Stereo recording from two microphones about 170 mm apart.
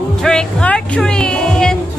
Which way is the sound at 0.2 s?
5° left (ahead or behind).